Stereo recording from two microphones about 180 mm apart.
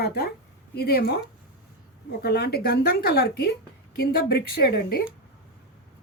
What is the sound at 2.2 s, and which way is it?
A woman's voice, 60° left (ahead or behind).